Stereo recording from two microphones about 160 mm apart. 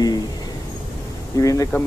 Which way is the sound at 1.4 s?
20° left (ahead or behind).